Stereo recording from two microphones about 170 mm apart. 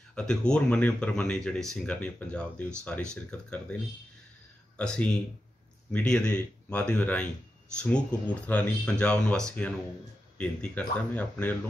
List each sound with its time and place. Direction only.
0.1 s speech: 5° left (ahead or behind)
4.7 s speech: 5° left (ahead or behind)